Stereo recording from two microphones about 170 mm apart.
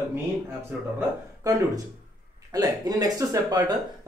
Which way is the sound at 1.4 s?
20° right (ahead or behind).